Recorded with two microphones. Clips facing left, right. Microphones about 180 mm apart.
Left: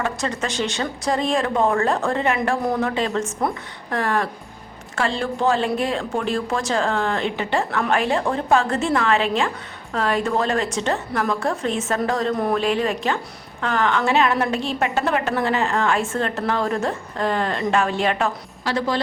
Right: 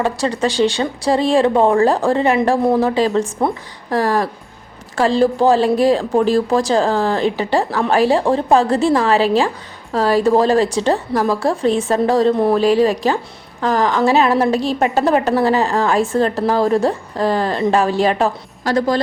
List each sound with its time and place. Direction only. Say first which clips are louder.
0.0 s a woman's voice: right 7 dB; 35° right (ahead or behind)